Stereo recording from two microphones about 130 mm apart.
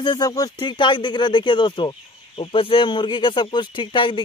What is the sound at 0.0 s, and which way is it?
Speech, 30° left (ahead or behind).